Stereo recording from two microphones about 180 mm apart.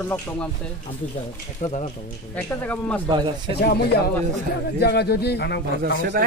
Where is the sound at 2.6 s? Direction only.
10° left (ahead or behind).